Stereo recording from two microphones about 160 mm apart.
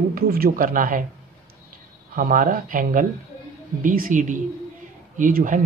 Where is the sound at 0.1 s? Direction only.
65° right (ahead or behind).